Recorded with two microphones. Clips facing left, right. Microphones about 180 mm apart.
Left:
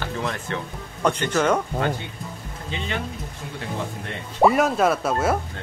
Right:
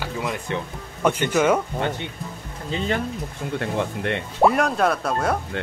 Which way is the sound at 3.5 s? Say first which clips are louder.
Right 5 dB; 70° right (ahead or behind).